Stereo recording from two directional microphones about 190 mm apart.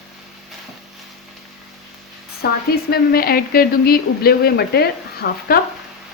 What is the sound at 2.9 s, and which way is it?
Speech, 50° left (ahead or behind).